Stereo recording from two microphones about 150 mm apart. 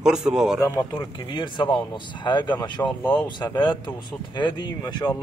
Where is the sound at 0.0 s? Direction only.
5° right (ahead or behind).